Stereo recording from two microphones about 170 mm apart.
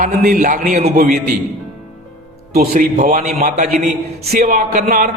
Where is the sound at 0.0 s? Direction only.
45° right (ahead or behind).